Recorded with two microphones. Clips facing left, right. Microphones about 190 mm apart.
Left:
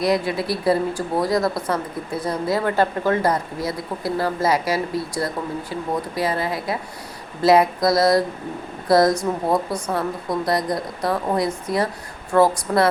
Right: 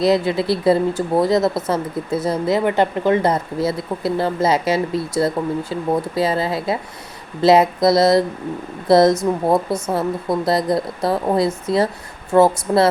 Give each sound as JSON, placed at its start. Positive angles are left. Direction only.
{"t": 0.0, "sound": "speech", "side_deg": -25}